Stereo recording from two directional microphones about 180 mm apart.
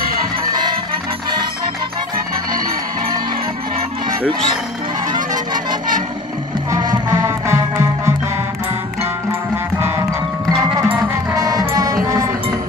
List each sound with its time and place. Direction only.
0.5 s music: 25° right (ahead or behind)
5.1 s music: 25° right (ahead or behind)
9.8 s music: 15° right (ahead or behind)